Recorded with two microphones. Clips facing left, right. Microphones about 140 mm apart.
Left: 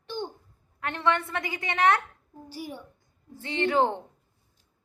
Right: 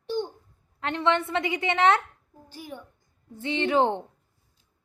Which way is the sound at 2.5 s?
10° left (ahead or behind).